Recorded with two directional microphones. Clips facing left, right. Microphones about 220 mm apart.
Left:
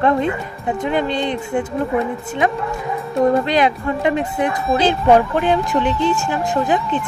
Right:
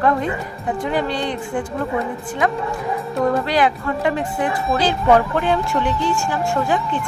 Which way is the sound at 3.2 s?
20° left (ahead or behind).